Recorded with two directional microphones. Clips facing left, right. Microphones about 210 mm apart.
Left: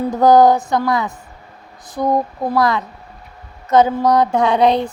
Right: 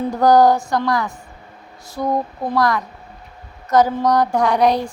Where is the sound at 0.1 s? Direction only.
20° left (ahead or behind).